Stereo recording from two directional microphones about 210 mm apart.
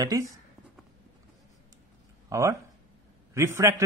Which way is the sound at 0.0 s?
15° right (ahead or behind).